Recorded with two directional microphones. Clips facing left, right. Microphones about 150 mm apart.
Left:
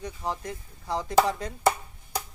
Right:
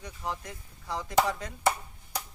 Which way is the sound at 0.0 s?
30° left (ahead or behind).